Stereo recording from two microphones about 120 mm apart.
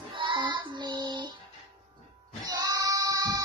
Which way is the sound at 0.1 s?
40° right (ahead or behind).